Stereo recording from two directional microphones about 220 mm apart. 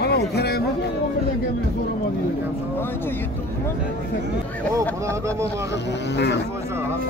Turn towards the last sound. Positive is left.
turn(degrees=50)  # may be behind; listen again after turning